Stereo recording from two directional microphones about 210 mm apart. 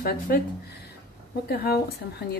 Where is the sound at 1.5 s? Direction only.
50° left (ahead or behind).